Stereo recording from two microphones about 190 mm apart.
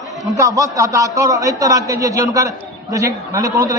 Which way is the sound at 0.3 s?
15° right (ahead or behind).